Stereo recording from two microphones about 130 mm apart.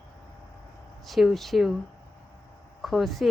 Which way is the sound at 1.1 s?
Centre (ahead or behind).